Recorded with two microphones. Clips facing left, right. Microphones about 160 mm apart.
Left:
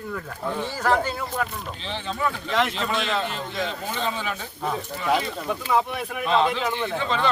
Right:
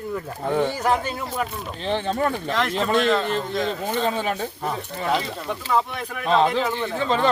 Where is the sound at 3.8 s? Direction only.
45° right (ahead or behind).